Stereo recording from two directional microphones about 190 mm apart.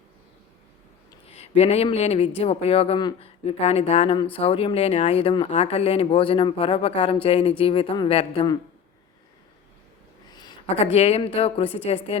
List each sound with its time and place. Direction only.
1.3 s speech: 30° left (ahead or behind)
10.9 s speech: 35° left (ahead or behind)